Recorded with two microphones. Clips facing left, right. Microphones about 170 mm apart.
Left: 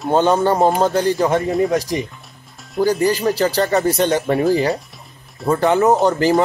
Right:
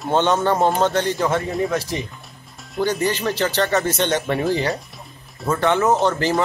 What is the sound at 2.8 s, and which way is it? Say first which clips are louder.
Speech: left 5 dB; 35° left (ahead or behind).